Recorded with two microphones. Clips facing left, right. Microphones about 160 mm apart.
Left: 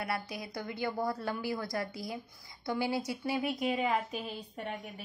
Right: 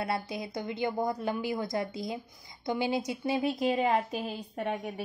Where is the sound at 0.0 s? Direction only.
25° right (ahead or behind).